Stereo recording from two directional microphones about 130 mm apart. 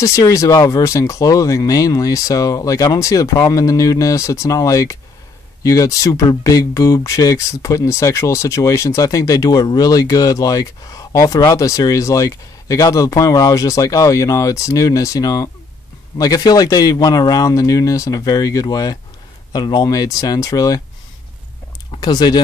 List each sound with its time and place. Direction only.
0.0 s speech: 25° left (ahead or behind)
22.0 s speech: 30° left (ahead or behind)